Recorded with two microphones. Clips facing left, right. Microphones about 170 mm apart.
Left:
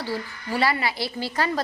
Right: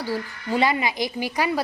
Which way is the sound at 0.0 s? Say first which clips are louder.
Right 2 dB; 15° right (ahead or behind).